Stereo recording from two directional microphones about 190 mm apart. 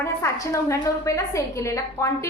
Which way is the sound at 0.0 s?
15° left (ahead or behind).